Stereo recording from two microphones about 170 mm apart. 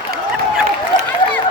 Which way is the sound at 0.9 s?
25° left (ahead or behind).